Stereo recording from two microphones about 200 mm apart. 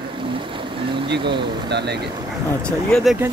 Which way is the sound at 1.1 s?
60° right (ahead or behind).